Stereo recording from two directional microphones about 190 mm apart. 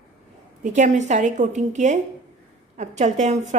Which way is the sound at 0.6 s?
40° right (ahead or behind).